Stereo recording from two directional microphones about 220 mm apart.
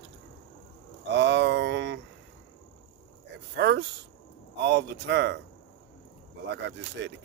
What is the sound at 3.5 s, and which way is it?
Speech, 50° right (ahead or behind).